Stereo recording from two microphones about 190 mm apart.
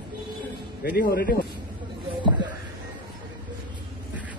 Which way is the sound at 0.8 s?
55° left (ahead or behind).